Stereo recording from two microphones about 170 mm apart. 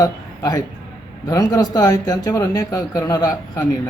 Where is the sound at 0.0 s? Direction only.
20° left (ahead or behind).